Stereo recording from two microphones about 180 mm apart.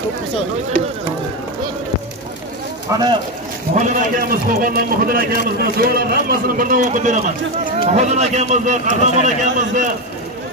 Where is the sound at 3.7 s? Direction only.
45° right (ahead or behind).